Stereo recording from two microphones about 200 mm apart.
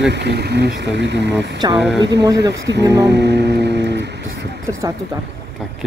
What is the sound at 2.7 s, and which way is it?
Speech, 20° right (ahead or behind).